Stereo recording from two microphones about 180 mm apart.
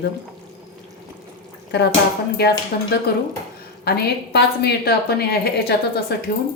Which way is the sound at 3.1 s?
60° left (ahead or behind).